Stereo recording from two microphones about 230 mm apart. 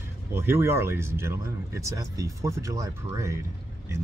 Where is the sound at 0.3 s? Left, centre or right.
Centre.